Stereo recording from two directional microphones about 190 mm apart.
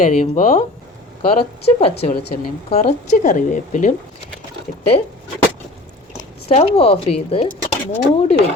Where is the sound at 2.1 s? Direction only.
55° left (ahead or behind).